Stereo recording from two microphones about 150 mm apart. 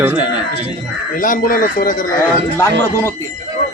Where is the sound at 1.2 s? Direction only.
65° left (ahead or behind).